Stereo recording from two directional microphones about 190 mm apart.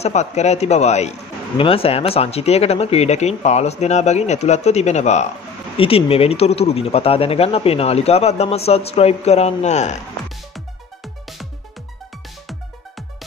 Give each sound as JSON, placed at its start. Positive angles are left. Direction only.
{"t": 0.0, "sound": "speech", "side_deg": 35}